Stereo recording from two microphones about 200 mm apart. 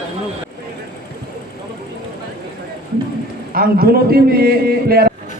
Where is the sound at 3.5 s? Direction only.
50° right (ahead or behind).